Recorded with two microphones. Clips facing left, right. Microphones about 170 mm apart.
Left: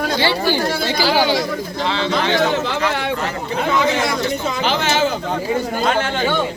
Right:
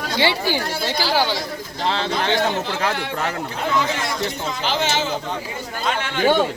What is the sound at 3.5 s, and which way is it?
Speech, 75° left (ahead or behind).